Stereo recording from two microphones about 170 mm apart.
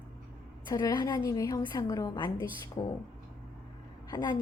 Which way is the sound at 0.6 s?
25° left (ahead or behind).